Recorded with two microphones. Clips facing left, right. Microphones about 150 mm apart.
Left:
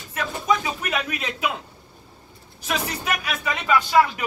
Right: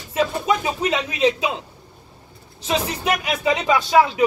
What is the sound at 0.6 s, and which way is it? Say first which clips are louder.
Speech: right 5 dB; 20° right (ahead or behind).